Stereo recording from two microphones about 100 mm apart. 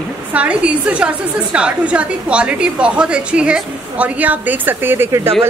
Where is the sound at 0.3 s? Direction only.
15° right (ahead or behind).